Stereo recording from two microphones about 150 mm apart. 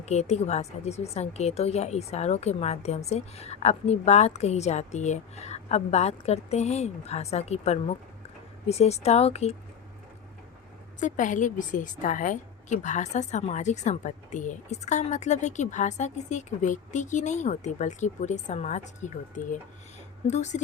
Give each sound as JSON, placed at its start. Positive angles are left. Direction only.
{"t": 0.0, "sound": "a woman's voice", "side_deg": 50}
{"t": 11.0, "sound": "a woman's voice", "side_deg": 55}